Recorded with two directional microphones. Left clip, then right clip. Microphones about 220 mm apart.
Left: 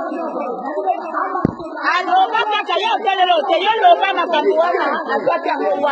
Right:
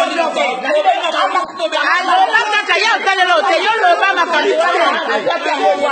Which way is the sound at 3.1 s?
30° right (ahead or behind).